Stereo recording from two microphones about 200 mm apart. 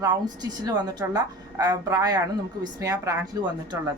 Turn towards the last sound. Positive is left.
turn(degrees=-20)  # may be behind; listen again after turning